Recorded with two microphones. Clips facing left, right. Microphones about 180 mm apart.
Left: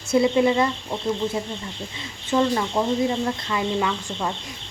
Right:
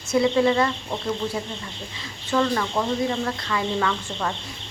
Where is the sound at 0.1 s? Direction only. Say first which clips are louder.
Left 1 dB; 20° left (ahead or behind).